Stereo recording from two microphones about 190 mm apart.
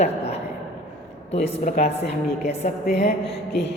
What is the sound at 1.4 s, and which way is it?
Speech, 40° left (ahead or behind).